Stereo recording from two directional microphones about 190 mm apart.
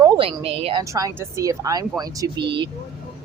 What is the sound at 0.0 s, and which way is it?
Speech, 30° right (ahead or behind).